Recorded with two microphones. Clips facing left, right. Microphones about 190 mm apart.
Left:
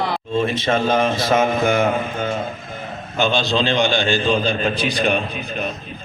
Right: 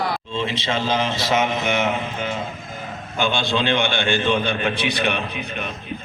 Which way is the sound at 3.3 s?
55° right (ahead or behind).